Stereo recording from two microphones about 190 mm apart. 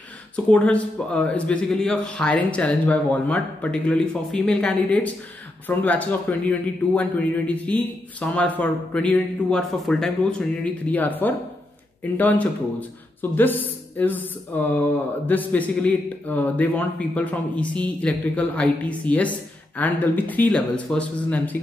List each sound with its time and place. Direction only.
0.5 s speech: 5° left (ahead or behind)